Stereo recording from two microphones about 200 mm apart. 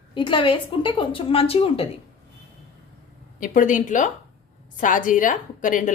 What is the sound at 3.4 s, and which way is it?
A woman's voice, 40° left (ahead or behind).